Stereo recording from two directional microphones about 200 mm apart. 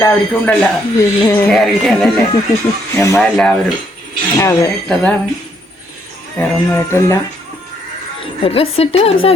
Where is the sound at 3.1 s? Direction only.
5° left (ahead or behind).